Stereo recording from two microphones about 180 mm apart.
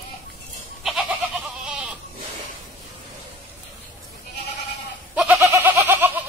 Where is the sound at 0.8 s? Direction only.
Centre (ahead or behind).